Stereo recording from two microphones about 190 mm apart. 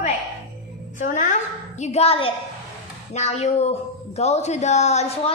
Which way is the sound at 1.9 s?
30° left (ahead or behind).